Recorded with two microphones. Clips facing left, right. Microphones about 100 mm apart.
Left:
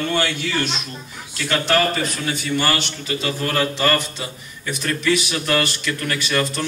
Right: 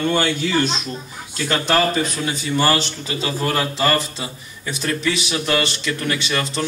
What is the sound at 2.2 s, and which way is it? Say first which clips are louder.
Speech: right 2 dB; 25° right (ahead or behind).